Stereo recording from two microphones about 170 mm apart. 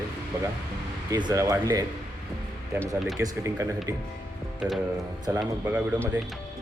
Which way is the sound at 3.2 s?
15° right (ahead or behind).